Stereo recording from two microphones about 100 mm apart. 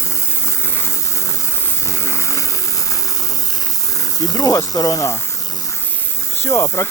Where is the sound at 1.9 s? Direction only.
30° left (ahead or behind).